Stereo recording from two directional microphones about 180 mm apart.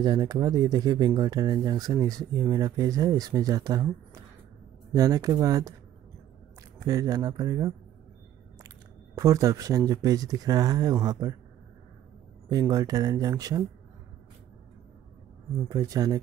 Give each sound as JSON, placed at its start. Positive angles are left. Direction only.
{"t": 0.0, "sound": "speech", "side_deg": -20}
{"t": 4.9, "sound": "speech", "side_deg": -20}
{"t": 6.8, "sound": "speech", "side_deg": -20}
{"t": 12.4, "sound": "speech", "side_deg": -20}
{"t": 15.7, "sound": "speech", "side_deg": -20}